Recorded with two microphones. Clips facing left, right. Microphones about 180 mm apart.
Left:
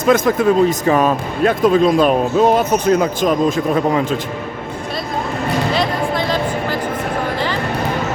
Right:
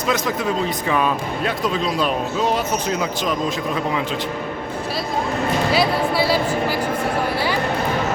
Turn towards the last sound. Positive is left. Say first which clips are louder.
# left 1 dB
turn(degrees=-10)  # may be behind; listen again after turning